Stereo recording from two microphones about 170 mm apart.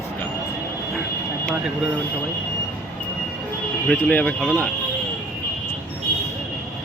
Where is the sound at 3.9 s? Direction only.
10° left (ahead or behind).